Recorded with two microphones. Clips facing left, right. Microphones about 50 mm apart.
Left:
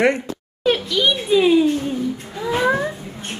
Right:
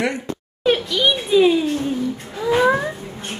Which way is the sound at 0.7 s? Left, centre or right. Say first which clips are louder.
Even; centre.